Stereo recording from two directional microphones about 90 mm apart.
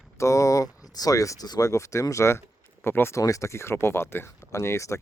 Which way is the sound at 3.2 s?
40° left (ahead or behind).